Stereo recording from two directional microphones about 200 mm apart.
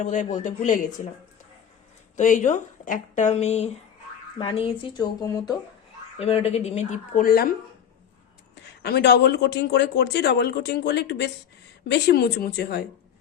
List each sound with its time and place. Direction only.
0.0 s speech: 35° left (ahead or behind)
2.1 s speech: 40° left (ahead or behind); by 5.5 s 20° left (ahead or behind)
6.1 s speech: 30° left (ahead or behind); by 7.5 s 45° left (ahead or behind)
8.8 s speech: 55° left (ahead or behind)